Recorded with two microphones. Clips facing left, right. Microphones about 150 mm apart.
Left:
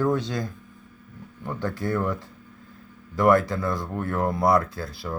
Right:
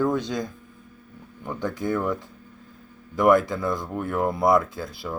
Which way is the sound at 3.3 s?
20° right (ahead or behind).